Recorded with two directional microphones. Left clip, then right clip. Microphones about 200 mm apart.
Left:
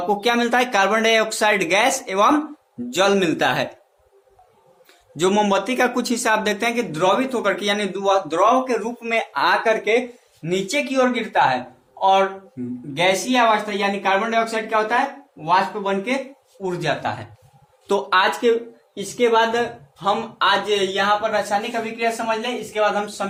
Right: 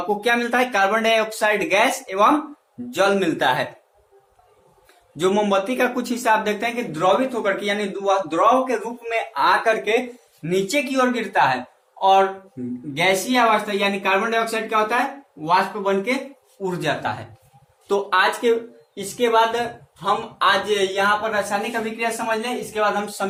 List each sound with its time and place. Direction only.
0.2 s speech: 35° left (ahead or behind)
5.1 s speech: 35° left (ahead or behind)
10.4 s speech: 25° left (ahead or behind)
17.8 s speech: 50° left (ahead or behind)
21.7 s speech: 25° left (ahead or behind)